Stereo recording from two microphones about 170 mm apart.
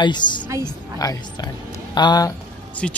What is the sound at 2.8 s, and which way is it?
Speech, 5° left (ahead or behind).